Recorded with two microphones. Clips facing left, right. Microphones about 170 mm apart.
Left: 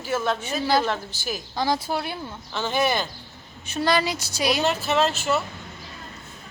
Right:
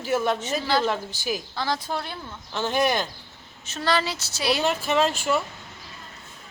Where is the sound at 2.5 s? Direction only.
10° right (ahead or behind).